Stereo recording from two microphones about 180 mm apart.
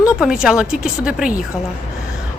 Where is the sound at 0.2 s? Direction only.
5° right (ahead or behind).